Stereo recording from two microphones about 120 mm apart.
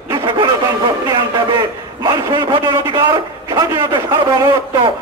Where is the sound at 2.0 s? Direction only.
35° right (ahead or behind).